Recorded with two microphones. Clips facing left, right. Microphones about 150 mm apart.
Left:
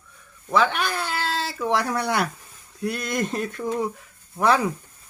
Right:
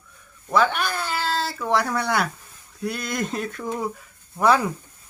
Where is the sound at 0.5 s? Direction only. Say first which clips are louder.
Right 1 dB; centre (ahead or behind).